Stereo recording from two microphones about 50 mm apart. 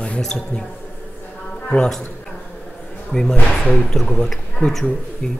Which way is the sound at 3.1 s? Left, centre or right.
Centre.